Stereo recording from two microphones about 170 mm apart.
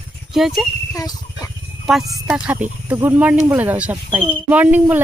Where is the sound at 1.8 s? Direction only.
Centre (ahead or behind).